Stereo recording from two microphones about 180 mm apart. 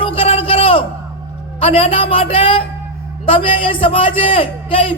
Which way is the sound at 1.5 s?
30° left (ahead or behind).